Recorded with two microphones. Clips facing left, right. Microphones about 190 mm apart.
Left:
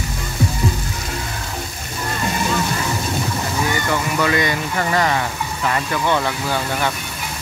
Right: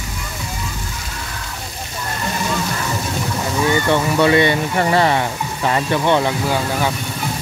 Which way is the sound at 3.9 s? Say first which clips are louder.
Right 6 dB; 25° right (ahead or behind).